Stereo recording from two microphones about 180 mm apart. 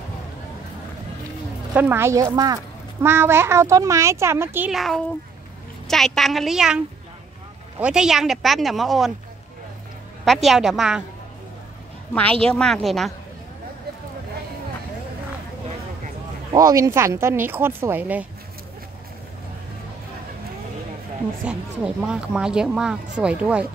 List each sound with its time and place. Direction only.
1.7 s a woman's voice: 10° right (ahead or behind)
7.8 s speech: 5° right (ahead or behind)
10.2 s speech: centre (ahead or behind)
12.1 s speech: 5° left (ahead or behind)
16.5 s a woman's voice: 20° right (ahead or behind)
21.5 s speech: 5° right (ahead or behind)